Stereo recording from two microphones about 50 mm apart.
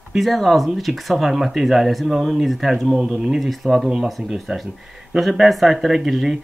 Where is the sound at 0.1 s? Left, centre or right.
Centre.